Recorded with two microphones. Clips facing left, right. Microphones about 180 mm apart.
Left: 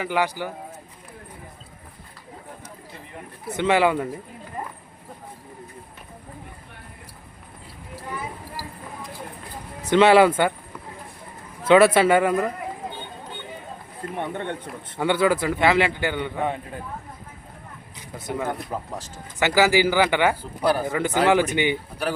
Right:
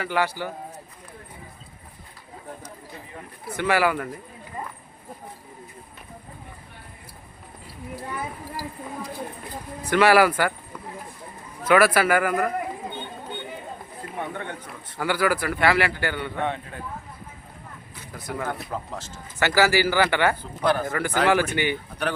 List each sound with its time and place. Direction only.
0.0 s speech: 15° left (ahead or behind)
3.5 s speech: 20° left (ahead or behind)
9.9 s speech: 20° left (ahead or behind)
11.6 s speech: 25° left (ahead or behind)
14.2 s speech: 25° left (ahead or behind)
18.2 s speech: 25° left (ahead or behind)